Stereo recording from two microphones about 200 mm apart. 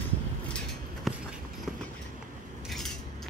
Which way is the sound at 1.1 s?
Centre (ahead or behind).